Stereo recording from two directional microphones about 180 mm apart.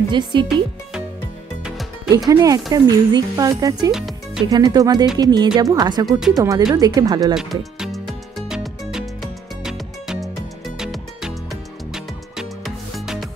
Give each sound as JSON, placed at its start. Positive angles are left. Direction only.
{"t": 0.1, "sound": "speech", "side_deg": -25}
{"t": 2.1, "sound": "speech", "side_deg": -20}
{"t": 3.9, "sound": "music", "side_deg": -5}
{"t": 4.5, "sound": "speech", "side_deg": -20}
{"t": 6.0, "sound": "speech", "side_deg": -5}
{"t": 6.3, "sound": "speech", "side_deg": -20}
{"t": 7.3, "sound": "music", "side_deg": 0}